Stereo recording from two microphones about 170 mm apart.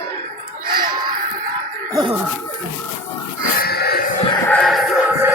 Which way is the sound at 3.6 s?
65° left (ahead or behind).